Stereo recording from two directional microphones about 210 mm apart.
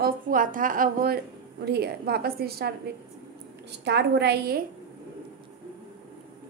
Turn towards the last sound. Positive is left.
turn(degrees=-50)  # may be behind; listen again after turning